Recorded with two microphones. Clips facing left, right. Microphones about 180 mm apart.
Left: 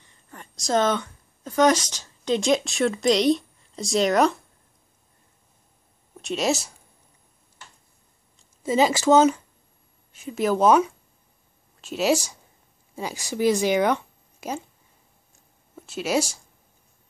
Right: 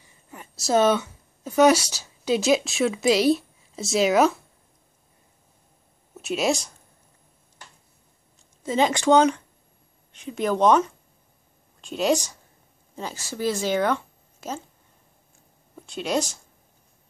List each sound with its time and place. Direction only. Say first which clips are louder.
0.0 s speech: right 1 dB; 10° right (ahead or behind)
6.1 s speech: even; centre (ahead or behind)
8.6 s speech: left 1 dB; 5° left (ahead or behind)
15.7 s speech: left 1 dB; 5° left (ahead or behind)